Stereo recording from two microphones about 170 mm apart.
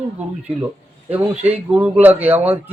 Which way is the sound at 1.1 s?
10° right (ahead or behind).